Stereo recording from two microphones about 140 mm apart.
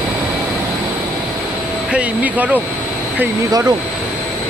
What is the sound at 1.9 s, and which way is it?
Speech, 10° right (ahead or behind).